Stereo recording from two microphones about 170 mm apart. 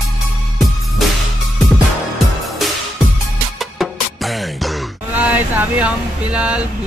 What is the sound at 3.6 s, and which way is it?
Music, centre (ahead or behind).